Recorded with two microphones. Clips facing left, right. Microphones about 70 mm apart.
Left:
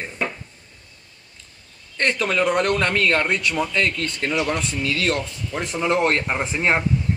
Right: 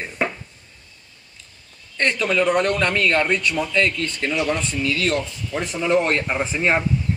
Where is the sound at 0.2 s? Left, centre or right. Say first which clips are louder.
Right 3 dB; centre.